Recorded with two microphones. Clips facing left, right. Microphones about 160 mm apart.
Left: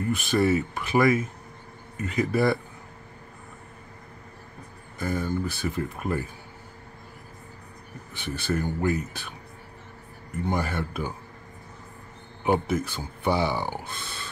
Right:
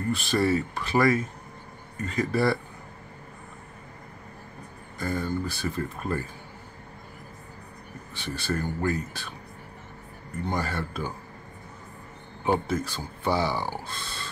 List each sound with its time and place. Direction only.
0.1 s speech: 20° left (ahead or behind)
5.0 s speech: 15° left (ahead or behind)
8.4 s speech: 15° left (ahead or behind)
10.4 s speech: 15° left (ahead or behind)
12.4 s speech: 20° left (ahead or behind)